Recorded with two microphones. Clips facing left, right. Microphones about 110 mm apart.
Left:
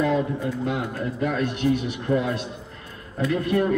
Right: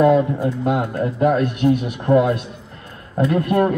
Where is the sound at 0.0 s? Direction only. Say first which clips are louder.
Right 8 dB; 50° right (ahead or behind).